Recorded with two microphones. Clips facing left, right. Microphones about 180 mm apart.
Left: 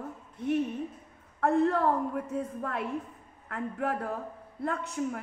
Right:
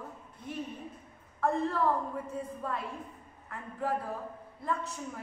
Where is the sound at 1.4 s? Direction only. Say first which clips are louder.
Left 5 dB; 70° left (ahead or behind).